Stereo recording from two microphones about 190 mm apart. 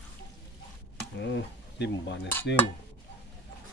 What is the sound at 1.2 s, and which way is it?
Speech, 65° left (ahead or behind).